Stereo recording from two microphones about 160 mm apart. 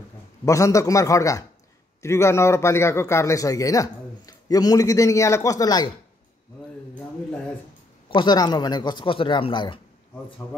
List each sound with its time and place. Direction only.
0.5 s a man's voice: 20° left (ahead or behind)
8.1 s a man's voice: 30° left (ahead or behind)